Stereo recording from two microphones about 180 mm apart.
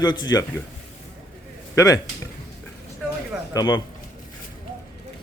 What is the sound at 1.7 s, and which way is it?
Speech, 20° left (ahead or behind).